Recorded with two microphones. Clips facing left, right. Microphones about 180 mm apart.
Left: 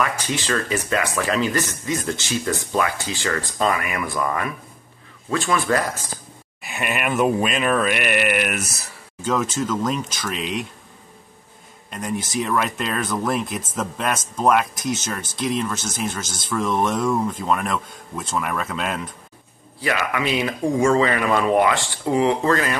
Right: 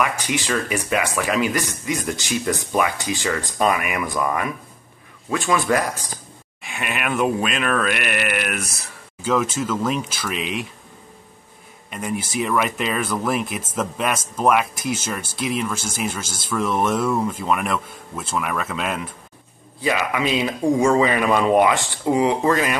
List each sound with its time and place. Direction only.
0.0 s speech: 15° right (ahead or behind)
6.6 s speech: centre (ahead or behind)
9.4 s speech: 10° right (ahead or behind)
11.9 s speech: 5° right (ahead or behind)
19.8 s speech: 20° right (ahead or behind)